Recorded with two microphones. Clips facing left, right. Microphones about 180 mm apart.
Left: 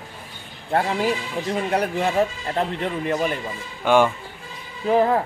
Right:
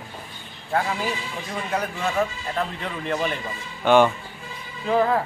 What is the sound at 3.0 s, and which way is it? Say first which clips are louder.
Speech: even; 10° left (ahead or behind).